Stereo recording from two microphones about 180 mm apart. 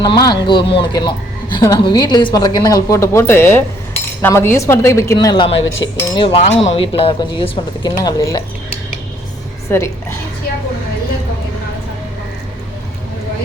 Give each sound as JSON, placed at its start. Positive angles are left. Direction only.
{"t": 0.3, "sound": "cutlery", "side_deg": 25}
{"t": 4.2, "sound": "a woman's voice", "side_deg": 15}
{"t": 5.8, "sound": "cutlery", "side_deg": 30}
{"t": 9.6, "sound": "a woman's voice", "side_deg": 15}